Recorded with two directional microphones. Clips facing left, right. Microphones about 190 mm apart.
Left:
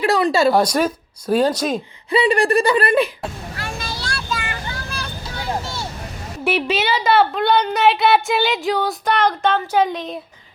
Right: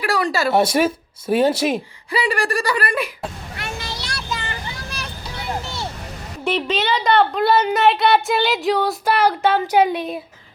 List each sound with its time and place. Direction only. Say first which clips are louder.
0.0 s a sound: left 4 dB; 25° left (ahead or behind)
0.7 s speech: right 1 dB; 5° right (ahead or behind)
2.0 s speech: left 5 dB; 25° left (ahead or behind)
3.6 s child singing: left 1 dB; 20° right (ahead or behind)
6.4 s a woman's voice: left 1 dB; 10° left (ahead or behind); by 10.2 s 10° right (ahead or behind)